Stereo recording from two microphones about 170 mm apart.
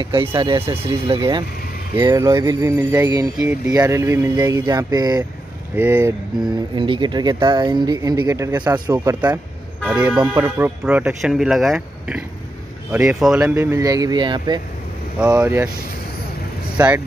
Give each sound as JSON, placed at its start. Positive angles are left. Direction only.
{"t": 0.0, "sound": "speech", "side_deg": -30}
{"t": 5.8, "sound": "speech", "side_deg": -10}
{"t": 6.7, "sound": "speech", "side_deg": -30}
{"t": 9.8, "sound": "speech", "side_deg": -10}
{"t": 15.1, "sound": "speech", "side_deg": -5}
{"t": 16.7, "sound": "speech", "side_deg": -10}